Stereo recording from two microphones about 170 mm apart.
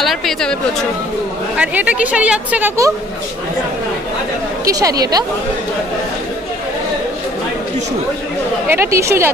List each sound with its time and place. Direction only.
0.0 s speech: centre (ahead or behind)
1.6 s a woman's voice: 10° right (ahead or behind)
4.6 s a woman's voice: 20° right (ahead or behind)
8.7 s a woman's voice: 15° right (ahead or behind)